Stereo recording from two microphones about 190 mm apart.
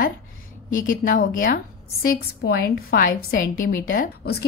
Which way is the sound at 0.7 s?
45° left (ahead or behind).